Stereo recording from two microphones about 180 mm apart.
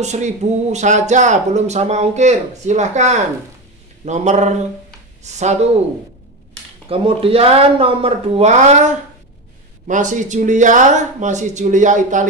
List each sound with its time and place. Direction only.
0.0 s speech: 40° right (ahead or behind)
6.9 s speech: 30° right (ahead or behind)